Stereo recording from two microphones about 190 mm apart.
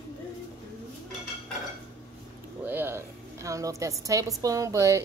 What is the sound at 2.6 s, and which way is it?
A woman's voice, 10° right (ahead or behind).